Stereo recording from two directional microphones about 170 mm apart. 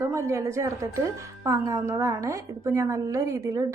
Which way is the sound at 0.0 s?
15° right (ahead or behind).